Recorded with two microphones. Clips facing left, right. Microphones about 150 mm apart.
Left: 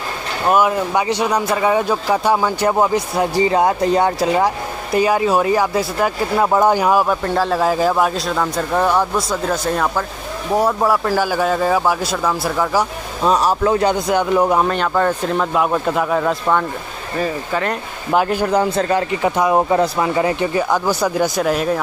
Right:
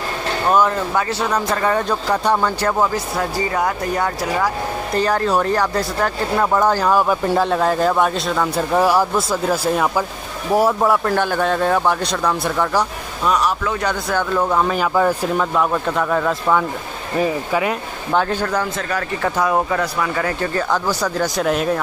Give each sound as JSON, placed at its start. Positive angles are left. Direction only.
{"t": 0.5, "sound": "speech", "side_deg": 10}
{"t": 4.9, "sound": "speech", "side_deg": 10}
{"t": 7.1, "sound": "a man's voice", "side_deg": 0}
{"t": 13.2, "sound": "speech", "side_deg": 30}
{"t": 14.7, "sound": "a man's voice", "side_deg": -5}
{"t": 15.5, "sound": "speech", "side_deg": 10}
{"t": 17.2, "sound": "speech", "side_deg": -10}
{"t": 18.1, "sound": "speech", "side_deg": 10}
{"t": 18.6, "sound": "a man's voice", "side_deg": 25}